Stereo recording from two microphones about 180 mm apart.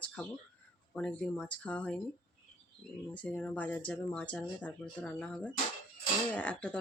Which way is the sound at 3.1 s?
10° left (ahead or behind).